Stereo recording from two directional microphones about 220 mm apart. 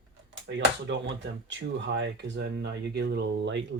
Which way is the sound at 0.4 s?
55° right (ahead or behind).